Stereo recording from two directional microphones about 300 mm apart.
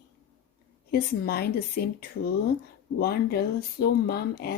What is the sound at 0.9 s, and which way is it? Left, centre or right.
Speech, left.